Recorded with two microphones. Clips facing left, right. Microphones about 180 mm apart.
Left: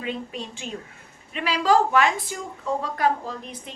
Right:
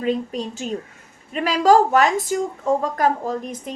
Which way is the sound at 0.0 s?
40° right (ahead or behind).